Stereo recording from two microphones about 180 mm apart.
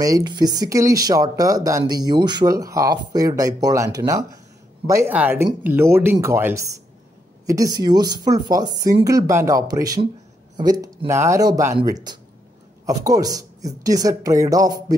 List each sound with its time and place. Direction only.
0.0 s speech: 20° right (ahead or behind)